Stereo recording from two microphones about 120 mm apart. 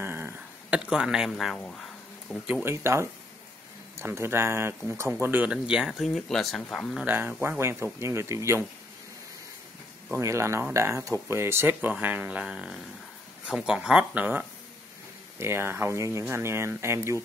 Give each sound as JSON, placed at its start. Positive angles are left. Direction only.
{"t": 0.0, "sound": "a sound", "side_deg": -20}
{"t": 1.3, "sound": "speech", "side_deg": 5}
{"t": 2.6, "sound": "speech", "side_deg": -20}
{"t": 7.0, "sound": "speech", "side_deg": -15}
{"t": 10.1, "sound": "speech", "side_deg": -20}